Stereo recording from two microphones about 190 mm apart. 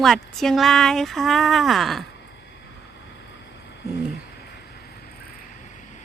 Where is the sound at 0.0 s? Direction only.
Centre (ahead or behind).